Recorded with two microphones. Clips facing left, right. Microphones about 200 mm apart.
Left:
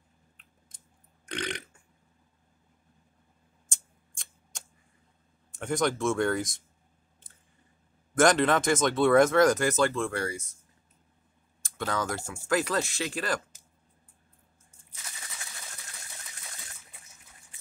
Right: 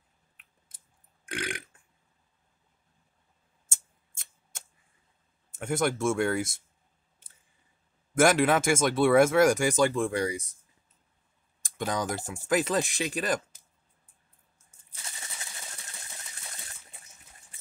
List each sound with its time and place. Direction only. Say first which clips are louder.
1.2 s burping: left 1 dB; 5° right (ahead or behind)
3.6 s a sound: right 1 dB; 5° right (ahead or behind)
5.5 s speech: even; 5° right (ahead or behind)
8.2 s speech: even; 10° right (ahead or behind)
11.6 s speech: right 1 dB; 15° right (ahead or behind)